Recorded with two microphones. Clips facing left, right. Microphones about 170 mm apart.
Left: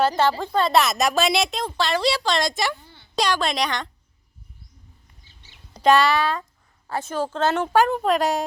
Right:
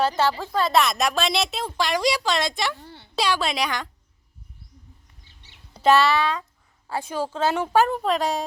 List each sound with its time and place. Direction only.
0.2 s a woman's voice: 5° right (ahead or behind)
2.8 s a sound: 70° right (ahead or behind)
3.2 s a woman's voice: 5° right (ahead or behind)
5.7 s speech: 5° right (ahead or behind)
6.8 s a woman's voice: 10° right (ahead or behind)